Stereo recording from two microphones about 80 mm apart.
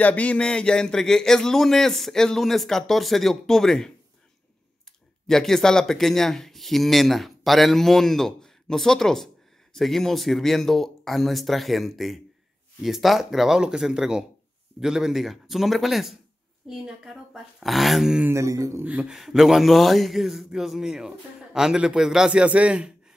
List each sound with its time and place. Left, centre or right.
0.0 s speech: centre
5.2 s speech: centre
18.3 s speech: right
18.9 s a man's voice: centre
19.1 s a man's voice: centre